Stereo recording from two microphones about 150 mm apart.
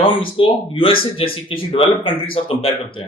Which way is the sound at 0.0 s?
35° left (ahead or behind).